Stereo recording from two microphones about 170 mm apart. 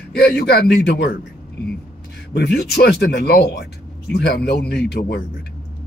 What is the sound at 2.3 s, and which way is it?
Speech, 80° left.